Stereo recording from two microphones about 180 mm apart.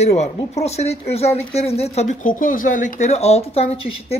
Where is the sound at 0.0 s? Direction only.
40° left (ahead or behind).